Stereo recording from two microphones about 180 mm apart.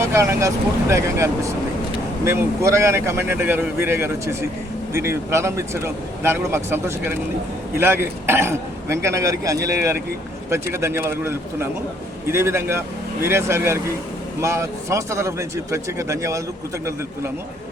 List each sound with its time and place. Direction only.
0.0 s speech: 15° right (ahead or behind)